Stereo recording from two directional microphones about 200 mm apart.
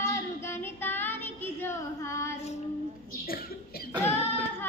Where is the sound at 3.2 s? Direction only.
45° left (ahead or behind).